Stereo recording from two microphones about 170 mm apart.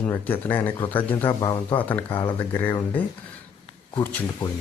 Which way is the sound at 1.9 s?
10° left (ahead or behind).